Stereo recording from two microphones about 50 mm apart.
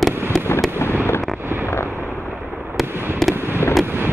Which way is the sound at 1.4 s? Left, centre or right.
Right.